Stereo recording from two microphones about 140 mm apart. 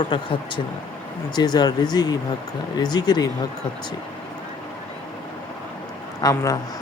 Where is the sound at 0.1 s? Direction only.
35° left (ahead or behind).